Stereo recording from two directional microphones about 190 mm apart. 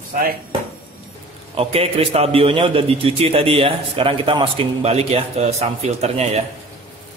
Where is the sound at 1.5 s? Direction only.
30° right (ahead or behind).